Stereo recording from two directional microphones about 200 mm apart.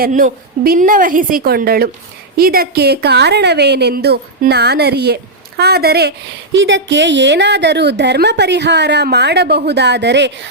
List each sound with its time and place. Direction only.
0.0 s a woman's voice: 40° right (ahead or behind); by 10.5 s 60° right (ahead or behind)